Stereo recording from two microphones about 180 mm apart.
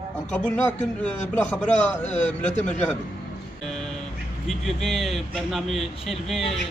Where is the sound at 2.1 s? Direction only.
40° left (ahead or behind).